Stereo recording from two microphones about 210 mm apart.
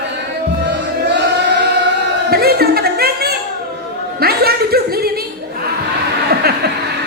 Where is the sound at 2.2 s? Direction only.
50° right (ahead or behind).